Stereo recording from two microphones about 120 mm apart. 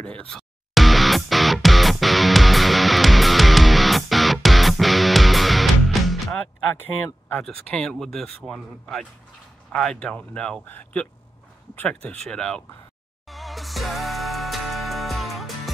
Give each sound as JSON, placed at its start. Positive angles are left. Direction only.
{"t": 0.0, "sound": "music", "side_deg": 10}
{"t": 7.4, "sound": "speech", "side_deg": 5}
{"t": 13.3, "sound": "music", "side_deg": 0}